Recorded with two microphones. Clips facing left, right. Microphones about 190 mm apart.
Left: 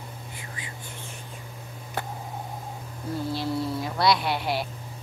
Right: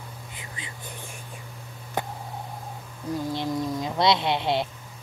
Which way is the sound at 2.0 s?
20° right (ahead or behind).